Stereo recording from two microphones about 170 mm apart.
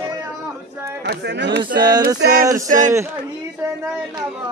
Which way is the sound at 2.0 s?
65° right (ahead or behind).